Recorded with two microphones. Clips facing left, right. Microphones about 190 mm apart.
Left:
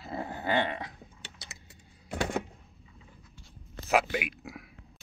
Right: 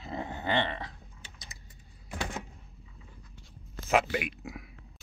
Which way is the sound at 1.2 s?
75° left (ahead or behind).